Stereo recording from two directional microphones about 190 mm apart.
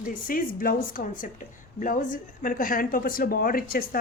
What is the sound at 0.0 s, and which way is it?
Speech, 50° left (ahead or behind).